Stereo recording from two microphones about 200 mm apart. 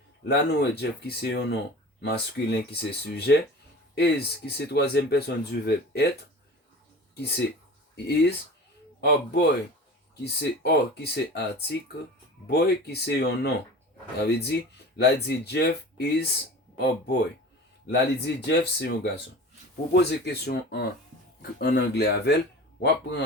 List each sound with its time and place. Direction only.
0.3 s speech: 55° left (ahead or behind)
7.2 s speech: 55° left (ahead or behind)
12.5 s speech: 55° left (ahead or behind)